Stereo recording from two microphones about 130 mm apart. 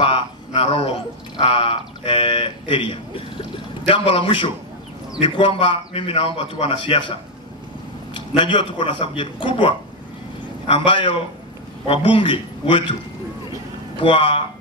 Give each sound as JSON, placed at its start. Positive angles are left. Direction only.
{"t": 0.6, "sound": "a man's voice", "side_deg": 45}
{"t": 13.9, "sound": "a man's voice", "side_deg": 40}